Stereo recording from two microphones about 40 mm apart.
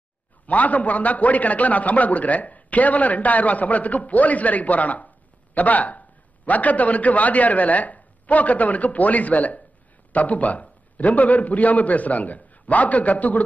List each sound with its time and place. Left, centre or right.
0.5 s a man's voice: left